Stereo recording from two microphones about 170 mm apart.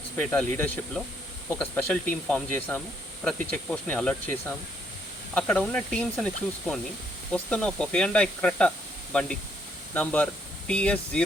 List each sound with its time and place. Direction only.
0.2 s speech: 10° left (ahead or behind)
9.9 s speech: 10° left (ahead or behind)